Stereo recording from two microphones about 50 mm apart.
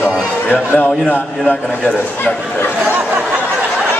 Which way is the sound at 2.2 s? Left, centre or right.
Left.